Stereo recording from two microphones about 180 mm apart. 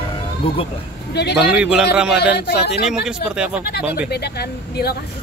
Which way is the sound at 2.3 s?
65° left (ahead or behind).